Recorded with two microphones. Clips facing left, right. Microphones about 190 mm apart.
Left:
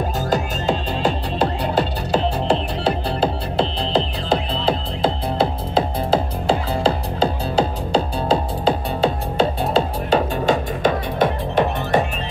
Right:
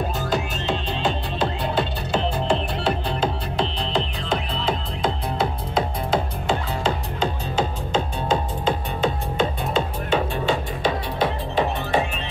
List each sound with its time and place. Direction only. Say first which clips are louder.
0.3 s music: left 6 dB; 40° left (ahead or behind)